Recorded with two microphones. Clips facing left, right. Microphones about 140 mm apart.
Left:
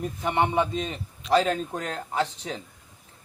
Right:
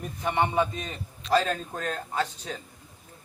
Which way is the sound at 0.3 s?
20° left (ahead or behind).